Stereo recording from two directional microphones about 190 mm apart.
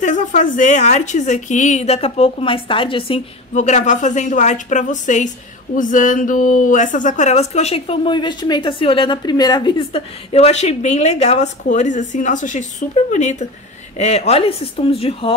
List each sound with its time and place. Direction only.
0.0 s speech: 40° left (ahead or behind)
3.5 s speech: 40° left (ahead or behind)